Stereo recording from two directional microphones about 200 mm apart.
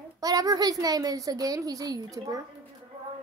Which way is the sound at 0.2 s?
20° right (ahead or behind).